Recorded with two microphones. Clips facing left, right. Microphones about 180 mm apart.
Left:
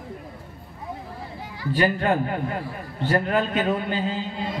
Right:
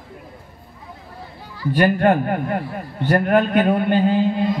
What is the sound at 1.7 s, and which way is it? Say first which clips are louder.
A woman's voice: right 6 dB; 55° right (ahead or behind).